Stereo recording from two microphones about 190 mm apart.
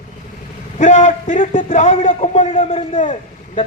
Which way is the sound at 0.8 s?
40° left (ahead or behind).